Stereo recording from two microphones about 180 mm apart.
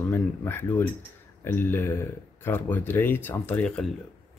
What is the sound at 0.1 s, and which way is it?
Speech, 10° left (ahead or behind).